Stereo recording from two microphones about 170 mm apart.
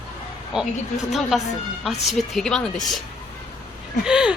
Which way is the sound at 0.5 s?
5° right (ahead or behind).